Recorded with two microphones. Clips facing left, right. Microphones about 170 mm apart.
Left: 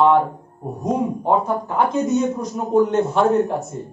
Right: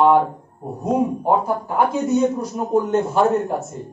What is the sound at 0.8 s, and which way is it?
Speech, 5° right (ahead or behind).